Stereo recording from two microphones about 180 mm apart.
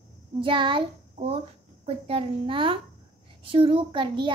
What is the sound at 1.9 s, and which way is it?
A child's voice, 30° right (ahead or behind).